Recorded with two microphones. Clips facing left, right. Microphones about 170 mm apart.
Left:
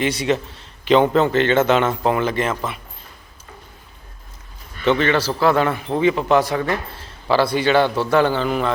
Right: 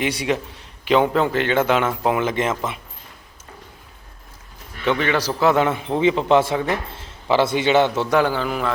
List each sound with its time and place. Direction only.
0.0 s a man's voice: 10° right (ahead or behind)
4.9 s a man's voice: 10° right (ahead or behind)
8.2 s a man's voice: 5° right (ahead or behind)